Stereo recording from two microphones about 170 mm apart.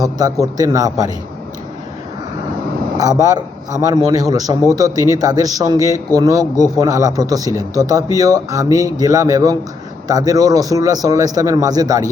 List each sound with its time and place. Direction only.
0.0 s a man's voice: 20° right (ahead or behind)
3.0 s a man's voice: 20° right (ahead or behind)